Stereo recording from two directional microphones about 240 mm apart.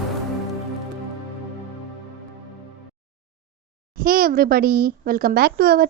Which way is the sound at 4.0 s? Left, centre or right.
Right.